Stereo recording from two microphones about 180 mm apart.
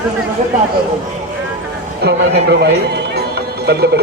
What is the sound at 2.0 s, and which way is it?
Speech, 65° right (ahead or behind).